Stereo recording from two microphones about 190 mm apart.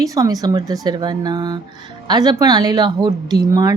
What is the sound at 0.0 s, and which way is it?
A woman's voice, 20° right (ahead or behind).